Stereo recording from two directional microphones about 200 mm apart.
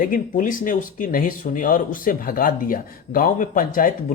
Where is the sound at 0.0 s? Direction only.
45° left (ahead or behind).